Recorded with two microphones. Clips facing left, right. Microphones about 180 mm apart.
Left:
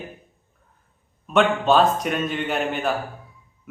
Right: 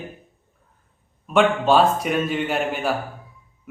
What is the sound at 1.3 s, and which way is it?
A man's voice, 10° right (ahead or behind).